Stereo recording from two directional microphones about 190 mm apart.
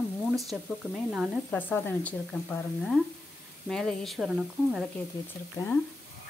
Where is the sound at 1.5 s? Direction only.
10° left (ahead or behind).